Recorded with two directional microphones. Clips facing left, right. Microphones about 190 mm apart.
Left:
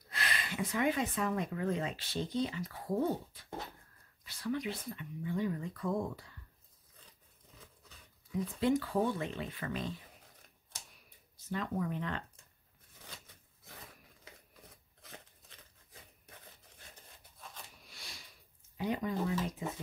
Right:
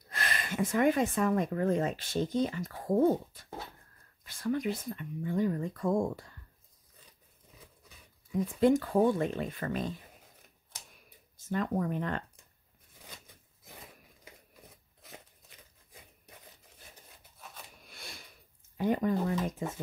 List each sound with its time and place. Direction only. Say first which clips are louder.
0.1 s speech: right 3 dB; 50° right (ahead or behind)
8.5 s speech: right 6 dB; 45° right (ahead or behind)
11.3 s speech: right 5 dB; 50° right (ahead or behind)
15.0 s a sound: right 2 dB; 10° right (ahead or behind)
17.8 s sniff: right 5 dB; 55° right (ahead or behind)
18.8 s speech: right 6 dB; 50° right (ahead or behind)